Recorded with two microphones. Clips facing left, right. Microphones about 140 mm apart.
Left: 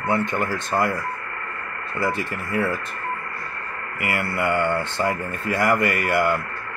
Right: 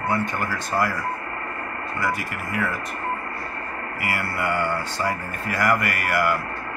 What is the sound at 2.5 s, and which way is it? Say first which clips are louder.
Speech: left 3 dB; 30° left (ahead or behind).